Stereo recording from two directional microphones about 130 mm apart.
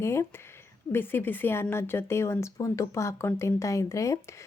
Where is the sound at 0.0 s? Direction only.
20° left (ahead or behind).